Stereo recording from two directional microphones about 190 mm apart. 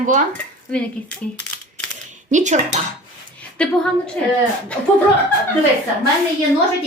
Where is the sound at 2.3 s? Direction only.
40° right (ahead or behind).